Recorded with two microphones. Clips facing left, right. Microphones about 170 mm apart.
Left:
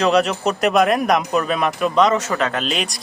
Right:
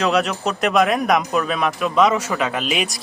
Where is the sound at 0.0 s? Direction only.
Centre (ahead or behind).